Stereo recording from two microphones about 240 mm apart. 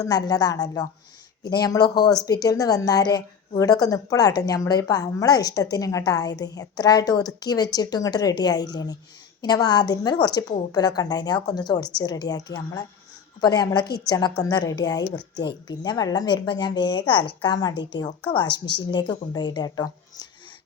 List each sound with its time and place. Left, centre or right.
0.0 s a woman's voice: centre